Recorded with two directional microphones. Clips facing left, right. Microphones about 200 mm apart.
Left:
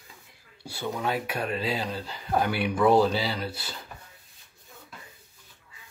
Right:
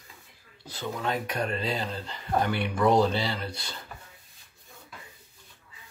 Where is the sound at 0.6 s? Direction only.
10° left (ahead or behind).